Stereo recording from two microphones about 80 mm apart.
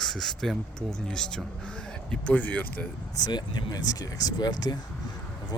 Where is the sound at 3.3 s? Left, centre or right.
Left.